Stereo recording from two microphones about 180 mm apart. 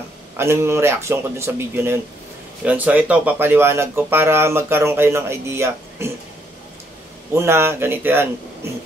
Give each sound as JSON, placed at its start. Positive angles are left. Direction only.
{"t": 0.4, "sound": "speech", "side_deg": -15}
{"t": 7.3, "sound": "speech", "side_deg": -15}